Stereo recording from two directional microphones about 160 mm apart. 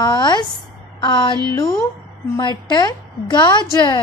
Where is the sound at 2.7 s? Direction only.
25° left (ahead or behind).